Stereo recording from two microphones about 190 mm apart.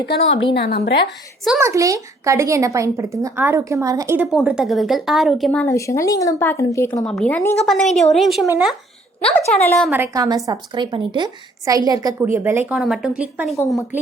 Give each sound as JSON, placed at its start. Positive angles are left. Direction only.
{"t": 0.0, "sound": "a woman's voice", "side_deg": 70}
{"t": 1.6, "sound": "speech", "side_deg": -15}
{"t": 4.3, "sound": "speech", "side_deg": -5}
{"t": 7.0, "sound": "a woman's voice", "side_deg": 5}
{"t": 9.9, "sound": "a woman's voice", "side_deg": -10}